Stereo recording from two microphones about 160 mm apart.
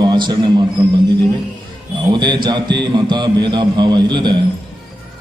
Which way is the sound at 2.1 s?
30° right (ahead or behind).